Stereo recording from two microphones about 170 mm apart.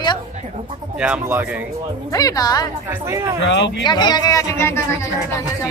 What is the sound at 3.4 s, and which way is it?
Speech, 90° left.